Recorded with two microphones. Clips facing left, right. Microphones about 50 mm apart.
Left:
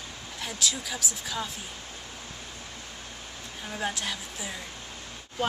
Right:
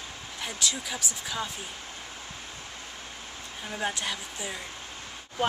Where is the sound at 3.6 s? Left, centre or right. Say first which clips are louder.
Right 1 dB; centre.